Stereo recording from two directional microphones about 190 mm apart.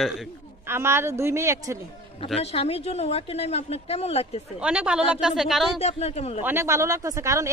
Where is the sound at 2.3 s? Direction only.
35° left (ahead or behind).